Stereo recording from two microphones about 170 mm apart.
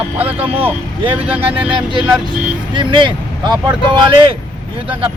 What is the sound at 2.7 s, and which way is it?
Speech, 30° right (ahead or behind).